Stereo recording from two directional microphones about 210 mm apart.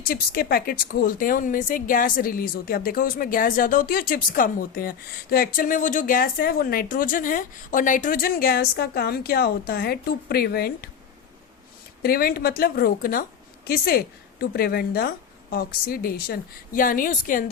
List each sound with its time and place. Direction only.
0.0 s speech: 45° left (ahead or behind)
12.0 s speech: 45° left (ahead or behind)